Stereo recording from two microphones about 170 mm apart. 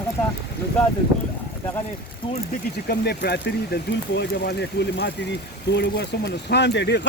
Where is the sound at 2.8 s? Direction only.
75° left (ahead or behind).